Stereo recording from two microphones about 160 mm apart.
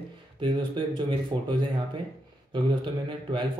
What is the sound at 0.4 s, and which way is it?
Speech, 30° right (ahead or behind).